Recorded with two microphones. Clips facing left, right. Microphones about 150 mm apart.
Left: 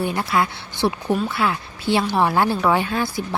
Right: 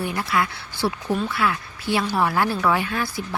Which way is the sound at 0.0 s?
25° left (ahead or behind).